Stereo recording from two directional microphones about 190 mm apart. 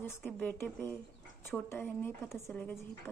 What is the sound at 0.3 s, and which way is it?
A woman's voice, 10° left (ahead or behind).